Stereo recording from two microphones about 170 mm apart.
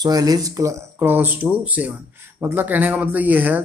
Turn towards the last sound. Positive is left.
turn(degrees=-10)  # may be behind; listen again after turning